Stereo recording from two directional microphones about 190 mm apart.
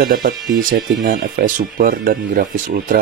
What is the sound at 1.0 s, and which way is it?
Speech, 50° right (ahead or behind).